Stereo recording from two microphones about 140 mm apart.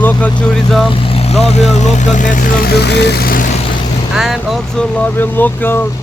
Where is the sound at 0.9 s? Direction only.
40° left (ahead or behind); by 2.7 s 80° left.